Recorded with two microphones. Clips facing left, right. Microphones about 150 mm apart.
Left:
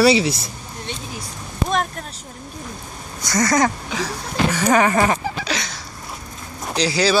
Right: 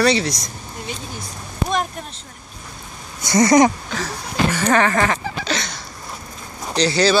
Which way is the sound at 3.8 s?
Centre (ahead or behind).